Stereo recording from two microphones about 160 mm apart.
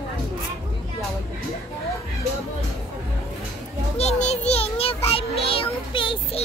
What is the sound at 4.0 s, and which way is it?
A child's voice, 45° left (ahead or behind).